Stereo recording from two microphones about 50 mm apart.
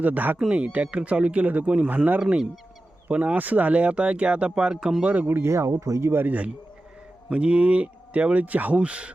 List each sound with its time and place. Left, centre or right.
0.0 s speech: right
0.3 s speech: right
3.1 s speech: right; by 5.0 s centre
5.0 s speech: right
5.5 s speech: right
6.2 s speech: right